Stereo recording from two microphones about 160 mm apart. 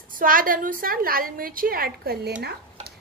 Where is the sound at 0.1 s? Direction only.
60° right (ahead or behind).